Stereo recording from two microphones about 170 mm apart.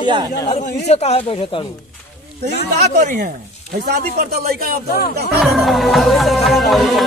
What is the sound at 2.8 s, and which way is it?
Speech, 55° right (ahead or behind).